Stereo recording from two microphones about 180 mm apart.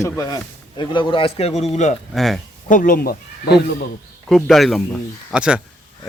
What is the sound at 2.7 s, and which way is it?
Speech, 50° left (ahead or behind).